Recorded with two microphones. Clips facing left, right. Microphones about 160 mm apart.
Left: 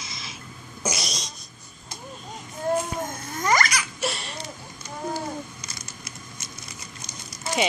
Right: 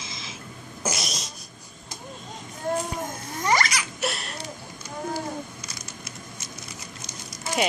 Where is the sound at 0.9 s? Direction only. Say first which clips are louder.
Even; centre (ahead or behind).